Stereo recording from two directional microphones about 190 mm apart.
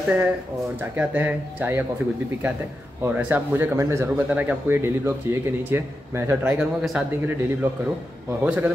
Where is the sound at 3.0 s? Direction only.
10° right (ahead or behind).